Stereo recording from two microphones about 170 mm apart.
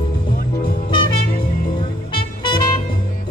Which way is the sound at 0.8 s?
30° left (ahead or behind).